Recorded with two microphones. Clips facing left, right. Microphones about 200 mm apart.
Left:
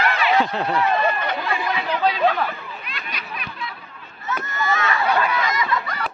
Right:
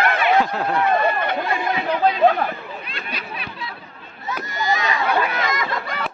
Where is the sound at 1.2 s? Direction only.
50° right (ahead or behind).